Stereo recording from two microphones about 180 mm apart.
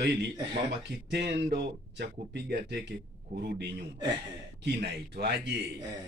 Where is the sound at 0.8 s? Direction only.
70° right (ahead or behind).